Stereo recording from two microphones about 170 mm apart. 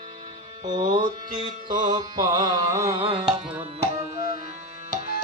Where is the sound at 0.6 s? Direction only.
25° right (ahead or behind).